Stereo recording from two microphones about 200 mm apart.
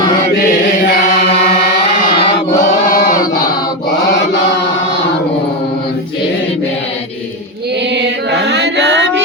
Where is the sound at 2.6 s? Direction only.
40° left (ahead or behind).